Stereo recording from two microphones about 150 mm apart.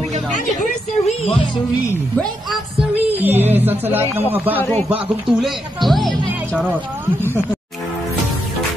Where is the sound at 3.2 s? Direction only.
15° right (ahead or behind).